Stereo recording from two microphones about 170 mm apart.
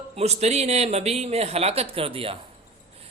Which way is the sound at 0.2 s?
40° right (ahead or behind).